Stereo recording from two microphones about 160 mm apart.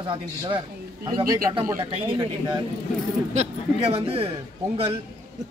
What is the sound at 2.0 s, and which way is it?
Speech, 30° right (ahead or behind).